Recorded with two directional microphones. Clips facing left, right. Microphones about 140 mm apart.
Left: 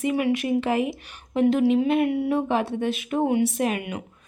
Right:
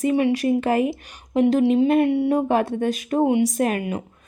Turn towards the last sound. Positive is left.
turn(degrees=-35)  # may be behind; listen again after turning